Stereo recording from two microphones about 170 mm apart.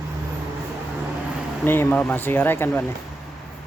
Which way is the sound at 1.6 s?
10° left (ahead or behind).